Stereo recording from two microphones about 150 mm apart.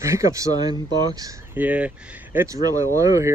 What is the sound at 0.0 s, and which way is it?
Speech, 20° right (ahead or behind).